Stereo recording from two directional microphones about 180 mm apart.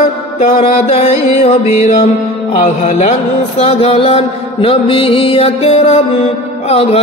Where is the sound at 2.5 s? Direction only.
40° left (ahead or behind).